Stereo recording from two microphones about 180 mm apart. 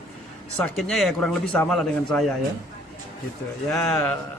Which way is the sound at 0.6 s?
Centre (ahead or behind).